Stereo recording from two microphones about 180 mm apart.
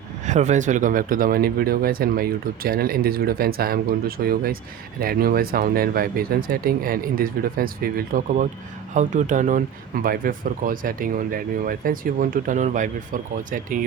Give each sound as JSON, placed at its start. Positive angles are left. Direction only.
{"t": 0.3, "sound": "speech", "side_deg": -40}